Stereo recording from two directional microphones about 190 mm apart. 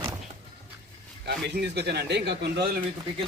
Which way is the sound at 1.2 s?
60° right (ahead or behind).